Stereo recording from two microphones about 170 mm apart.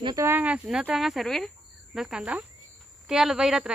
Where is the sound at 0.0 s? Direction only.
20° right (ahead or behind).